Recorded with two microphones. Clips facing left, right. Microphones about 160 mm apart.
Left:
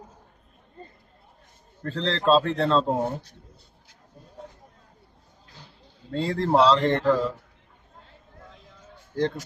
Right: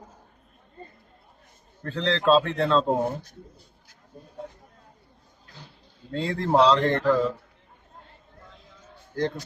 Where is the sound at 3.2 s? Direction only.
30° left (ahead or behind).